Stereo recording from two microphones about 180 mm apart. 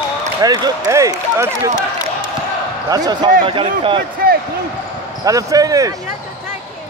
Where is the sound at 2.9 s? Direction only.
25° right (ahead or behind).